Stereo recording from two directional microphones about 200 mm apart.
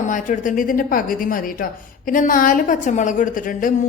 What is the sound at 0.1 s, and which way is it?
A woman's voice, 40° left (ahead or behind).